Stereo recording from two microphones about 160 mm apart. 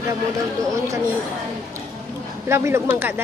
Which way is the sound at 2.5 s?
15° right (ahead or behind).